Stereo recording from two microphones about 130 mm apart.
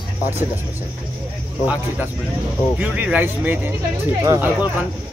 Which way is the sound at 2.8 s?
15° right (ahead or behind).